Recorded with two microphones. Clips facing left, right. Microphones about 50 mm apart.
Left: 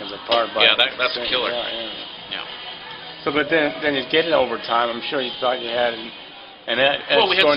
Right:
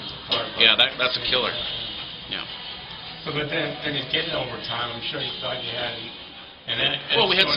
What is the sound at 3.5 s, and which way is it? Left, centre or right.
Speech, left.